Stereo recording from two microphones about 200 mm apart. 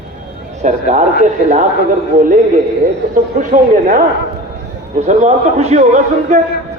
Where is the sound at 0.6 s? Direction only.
35° right (ahead or behind).